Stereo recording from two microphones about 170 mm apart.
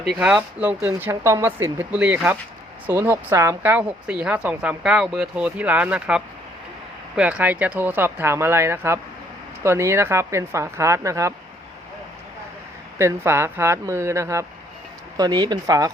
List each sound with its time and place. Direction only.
0.2 s speech: 5° right (ahead or behind)
13.0 s speech: 15° right (ahead or behind)